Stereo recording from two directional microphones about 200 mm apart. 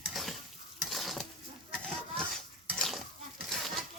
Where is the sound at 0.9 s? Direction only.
Centre (ahead or behind).